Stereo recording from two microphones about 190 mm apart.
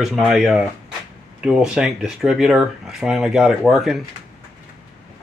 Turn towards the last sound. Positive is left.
turn(degrees=0)  # may be behind; listen again after turning